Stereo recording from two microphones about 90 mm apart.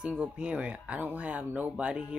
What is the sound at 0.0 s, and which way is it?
Speech, 10° right (ahead or behind).